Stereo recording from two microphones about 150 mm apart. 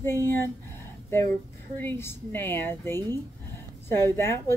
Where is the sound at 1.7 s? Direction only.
15° left (ahead or behind).